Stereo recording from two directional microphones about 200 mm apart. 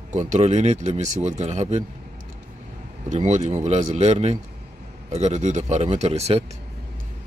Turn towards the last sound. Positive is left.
turn(degrees=-30)  # may be behind; listen again after turning